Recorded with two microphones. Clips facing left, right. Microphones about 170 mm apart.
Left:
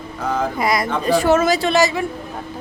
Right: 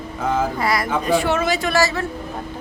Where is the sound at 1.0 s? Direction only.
40° left (ahead or behind).